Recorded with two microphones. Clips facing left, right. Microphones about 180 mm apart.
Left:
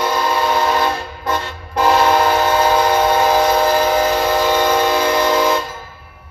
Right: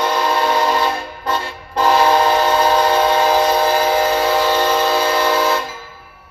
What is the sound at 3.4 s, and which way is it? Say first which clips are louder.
Train: left 1 dB; 10° right (ahead or behind).